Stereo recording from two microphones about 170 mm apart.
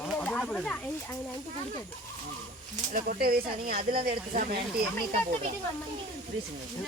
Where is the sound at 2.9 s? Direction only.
55° right (ahead or behind).